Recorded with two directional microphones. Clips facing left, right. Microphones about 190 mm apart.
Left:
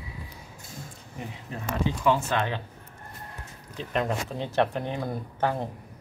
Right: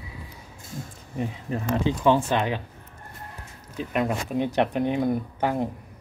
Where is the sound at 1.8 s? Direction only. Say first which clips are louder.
Right 3 dB; 20° right (ahead or behind).